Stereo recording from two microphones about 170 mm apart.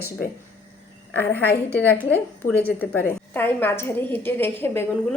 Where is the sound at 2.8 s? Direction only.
10° left (ahead or behind).